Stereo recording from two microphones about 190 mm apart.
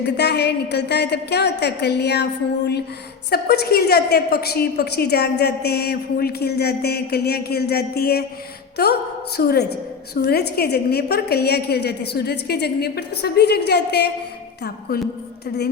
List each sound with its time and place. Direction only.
0.0 s a woman's voice: 60° left (ahead or behind)
3.2 s a woman's voice: 60° left (ahead or behind)